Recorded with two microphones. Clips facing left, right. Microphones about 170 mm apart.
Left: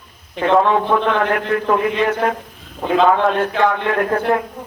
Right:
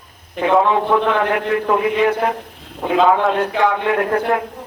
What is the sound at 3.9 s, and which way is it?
Speech, 5° right (ahead or behind).